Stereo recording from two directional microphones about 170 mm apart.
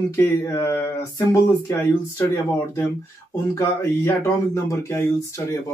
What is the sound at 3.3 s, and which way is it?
Speech, 15° left (ahead or behind).